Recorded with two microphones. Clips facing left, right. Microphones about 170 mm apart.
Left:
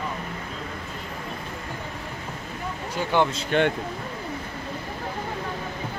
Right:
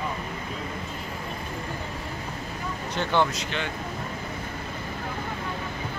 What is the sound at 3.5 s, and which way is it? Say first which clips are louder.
Speech: left 14 dB; 50° left (ahead or behind).